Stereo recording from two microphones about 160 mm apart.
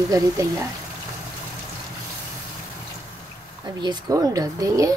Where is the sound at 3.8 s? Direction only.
25° right (ahead or behind).